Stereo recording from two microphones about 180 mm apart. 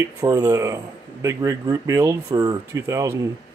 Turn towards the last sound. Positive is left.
turn(degrees=-20)  # may be behind; listen again after turning